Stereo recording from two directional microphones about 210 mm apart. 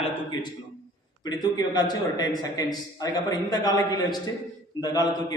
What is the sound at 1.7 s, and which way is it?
A man's voice, 20° left (ahead or behind).